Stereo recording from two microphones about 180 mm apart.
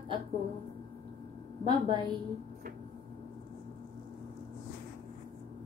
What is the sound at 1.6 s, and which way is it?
Female singing, 25° right (ahead or behind).